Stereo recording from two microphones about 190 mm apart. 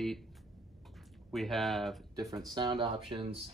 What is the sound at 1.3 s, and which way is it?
Speech, centre (ahead or behind).